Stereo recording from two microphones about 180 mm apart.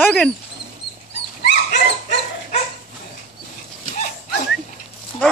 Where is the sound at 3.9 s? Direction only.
50° left (ahead or behind).